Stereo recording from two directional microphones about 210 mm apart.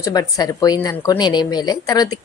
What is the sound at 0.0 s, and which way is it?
A woman's voice, 15° left (ahead or behind).